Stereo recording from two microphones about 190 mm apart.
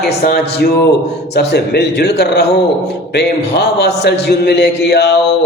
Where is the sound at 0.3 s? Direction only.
55° left (ahead or behind).